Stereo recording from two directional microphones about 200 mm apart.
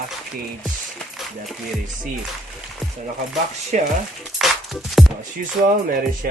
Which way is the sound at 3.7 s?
40° right (ahead or behind).